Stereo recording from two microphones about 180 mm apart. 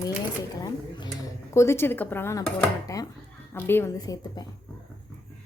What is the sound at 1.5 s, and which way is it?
A woman's voice, 15° left (ahead or behind).